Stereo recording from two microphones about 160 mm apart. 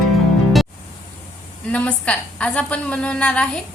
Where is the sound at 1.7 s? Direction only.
5° left (ahead or behind).